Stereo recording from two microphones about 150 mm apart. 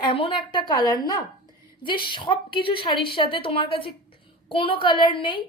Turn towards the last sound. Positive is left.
turn(degrees=35)  # may be behind; listen again after turning